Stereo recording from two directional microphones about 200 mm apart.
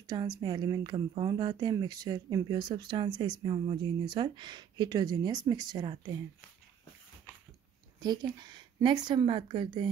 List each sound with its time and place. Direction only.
0.0 s speech: 20° right (ahead or behind)
8.0 s speech: 20° right (ahead or behind)